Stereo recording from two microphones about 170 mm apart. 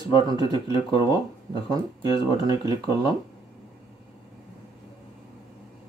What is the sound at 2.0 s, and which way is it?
Speech, 30° left (ahead or behind).